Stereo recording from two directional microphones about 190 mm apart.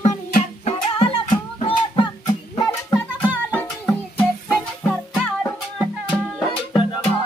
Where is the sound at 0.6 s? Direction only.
30° left (ahead or behind).